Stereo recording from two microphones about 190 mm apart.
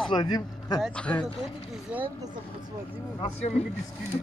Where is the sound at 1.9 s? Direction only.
5° right (ahead or behind).